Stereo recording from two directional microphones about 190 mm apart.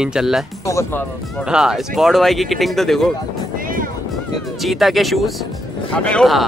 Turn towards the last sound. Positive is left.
turn(degrees=0)  # may be behind; listen again after turning